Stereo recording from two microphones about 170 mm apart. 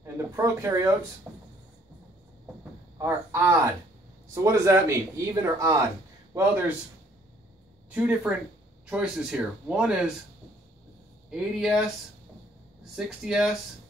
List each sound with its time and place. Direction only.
0.0 s speech: 15° right (ahead or behind)
1.3 s a sound: 10° right (ahead or behind)
3.0 s a man's voice: 15° right (ahead or behind)
7.9 s a man's voice: 5° right (ahead or behind)
11.2 s speech: 5° right (ahead or behind)
12.9 s speech: 5° right (ahead or behind)